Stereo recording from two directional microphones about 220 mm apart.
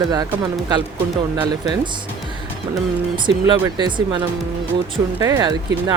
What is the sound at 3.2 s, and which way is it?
Speech, 20° right (ahead or behind).